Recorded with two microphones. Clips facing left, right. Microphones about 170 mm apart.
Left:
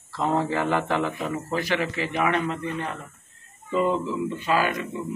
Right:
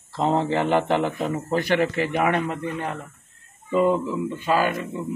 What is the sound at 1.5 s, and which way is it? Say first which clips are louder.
Speech: right 6 dB; 55° right (ahead or behind).